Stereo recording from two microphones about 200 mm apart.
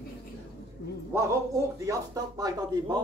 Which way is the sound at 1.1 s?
15° right (ahead or behind).